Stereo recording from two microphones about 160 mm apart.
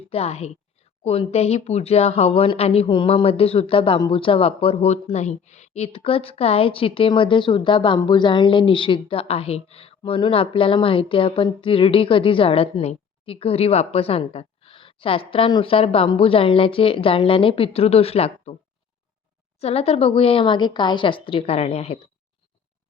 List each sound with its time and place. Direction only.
0.1 s speech: 40° left (ahead or behind)
19.5 s speech: 40° left (ahead or behind)